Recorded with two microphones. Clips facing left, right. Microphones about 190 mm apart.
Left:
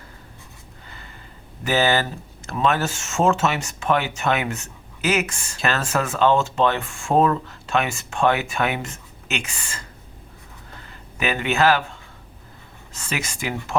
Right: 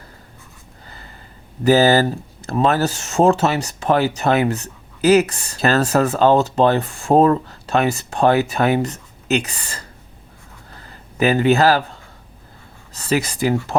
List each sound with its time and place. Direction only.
0.9 s gasp: 35° right (ahead or behind)
1.6 s speech: 35° right (ahead or behind)
10.8 s a sound: 35° right (ahead or behind)
12.9 s speech: 35° right (ahead or behind)